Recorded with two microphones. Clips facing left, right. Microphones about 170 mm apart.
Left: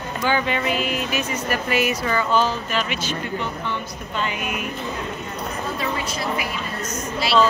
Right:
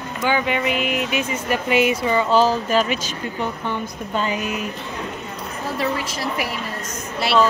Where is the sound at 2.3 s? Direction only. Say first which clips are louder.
Right 6 dB; 40° right (ahead or behind).